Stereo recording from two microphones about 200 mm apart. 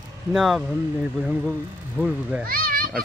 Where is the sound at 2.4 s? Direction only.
45° right (ahead or behind).